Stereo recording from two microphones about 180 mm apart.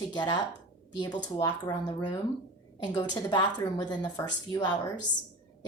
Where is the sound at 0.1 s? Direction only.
25° left (ahead or behind).